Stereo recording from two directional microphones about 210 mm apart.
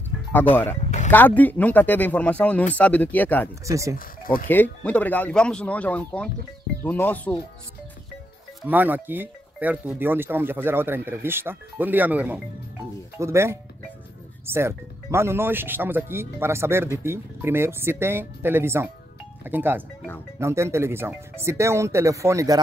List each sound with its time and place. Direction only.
1.1 s speech: 10° left (ahead or behind)
3.6 s speech: 15° right (ahead or behind)
4.2 s speech: 45° left (ahead or behind)
4.5 s speech: 10° left (ahead or behind)
8.6 s speech: 10° right (ahead or behind)